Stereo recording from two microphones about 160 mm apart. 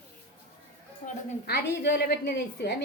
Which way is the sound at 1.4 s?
90° left.